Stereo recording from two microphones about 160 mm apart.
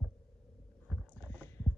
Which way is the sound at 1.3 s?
10° left (ahead or behind).